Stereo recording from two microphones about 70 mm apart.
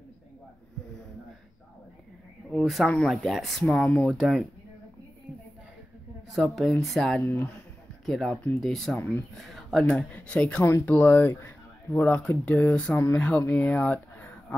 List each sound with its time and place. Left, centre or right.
2.5 s speech: centre
3.6 s speech: centre
4.1 s speech: centre
6.3 s speech: centre
7.2 s speech: left
8.0 s speech: centre
8.9 s speech: left
9.3 s speech: centre
9.8 s speech: centre
10.9 s speech: left